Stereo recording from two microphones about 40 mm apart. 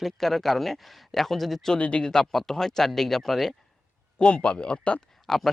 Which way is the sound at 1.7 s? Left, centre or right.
Left.